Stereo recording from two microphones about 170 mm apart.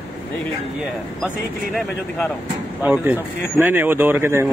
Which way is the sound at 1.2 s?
Centre (ahead or behind).